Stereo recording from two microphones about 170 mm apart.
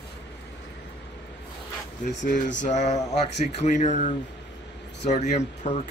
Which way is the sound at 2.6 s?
45° left (ahead or behind).